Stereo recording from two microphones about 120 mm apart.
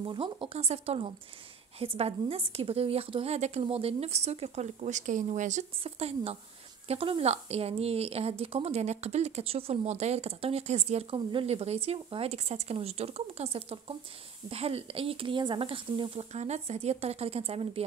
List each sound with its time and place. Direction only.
0.0 s a woman's voice: 45° right (ahead or behind)
16.3 s a woman's voice: 65° right (ahead or behind)